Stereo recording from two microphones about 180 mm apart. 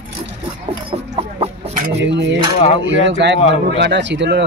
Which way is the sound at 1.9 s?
70° right (ahead or behind).